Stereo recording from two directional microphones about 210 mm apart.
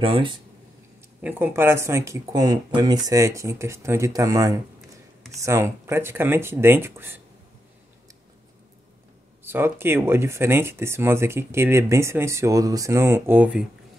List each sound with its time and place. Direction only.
0.0 s speech: 25° right (ahead or behind)
1.2 s speech: 10° right (ahead or behind)
9.4 s speech: 10° right (ahead or behind)